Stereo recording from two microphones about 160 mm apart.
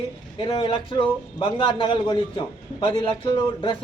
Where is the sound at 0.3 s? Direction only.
30° left (ahead or behind).